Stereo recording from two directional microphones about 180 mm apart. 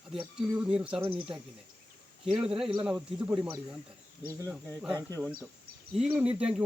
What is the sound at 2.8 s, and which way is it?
Speech, 5° right (ahead or behind).